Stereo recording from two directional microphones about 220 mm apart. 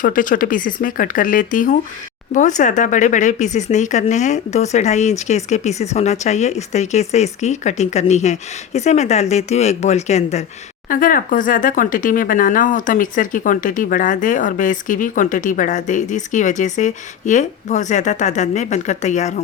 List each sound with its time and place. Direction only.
0.0 s speech: 40° left (ahead or behind)